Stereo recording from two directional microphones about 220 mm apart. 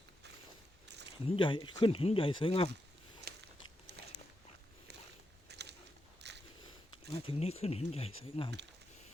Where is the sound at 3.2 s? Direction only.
50° right (ahead or behind).